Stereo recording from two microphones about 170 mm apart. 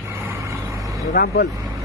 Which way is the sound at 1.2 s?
75° left (ahead or behind).